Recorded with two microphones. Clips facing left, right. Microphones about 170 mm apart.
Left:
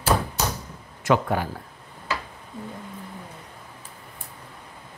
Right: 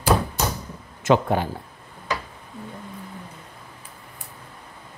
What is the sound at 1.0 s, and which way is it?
Speech, 25° right (ahead or behind).